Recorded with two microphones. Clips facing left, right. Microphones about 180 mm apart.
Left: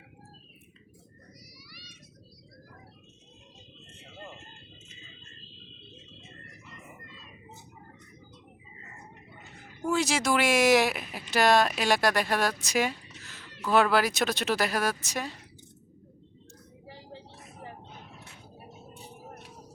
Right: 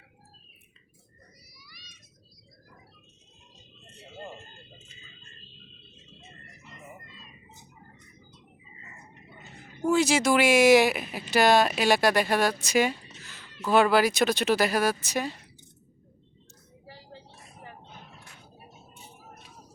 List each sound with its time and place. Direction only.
1.5 s children playing: 75° left (ahead or behind)
9.9 s speech: centre (ahead or behind)
13.1 s a sound: centre (ahead or behind)
13.7 s speech: centre (ahead or behind)
16.8 s vehicle: 20° left (ahead or behind)